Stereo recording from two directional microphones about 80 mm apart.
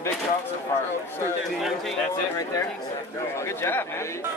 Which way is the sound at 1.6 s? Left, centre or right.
Centre.